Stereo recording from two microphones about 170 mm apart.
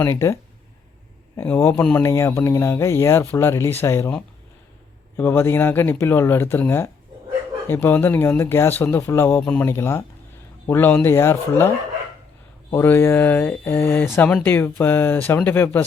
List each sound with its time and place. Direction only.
0.0 s speech: 15° left (ahead or behind)
1.4 s speech: 10° left (ahead or behind)
5.1 s speech: 10° left (ahead or behind)
12.7 s speech: 15° left (ahead or behind)